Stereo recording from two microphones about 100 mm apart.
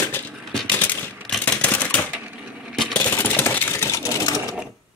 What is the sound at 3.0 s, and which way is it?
Sewing machine, 20° left (ahead or behind).